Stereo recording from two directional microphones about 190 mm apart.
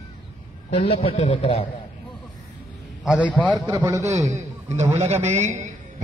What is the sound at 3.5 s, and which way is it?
Speech, 20° right (ahead or behind).